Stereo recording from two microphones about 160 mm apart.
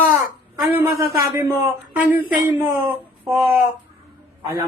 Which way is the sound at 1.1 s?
20° right (ahead or behind).